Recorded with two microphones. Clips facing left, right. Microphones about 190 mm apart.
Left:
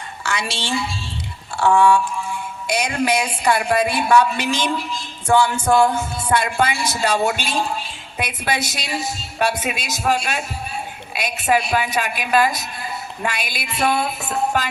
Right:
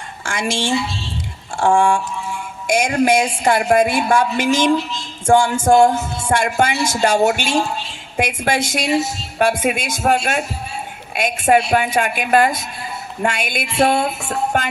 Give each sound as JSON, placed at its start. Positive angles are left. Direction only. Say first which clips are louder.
{"t": 0.3, "sound": "a woman's voice", "louder": "right 5 dB", "side_deg": -50}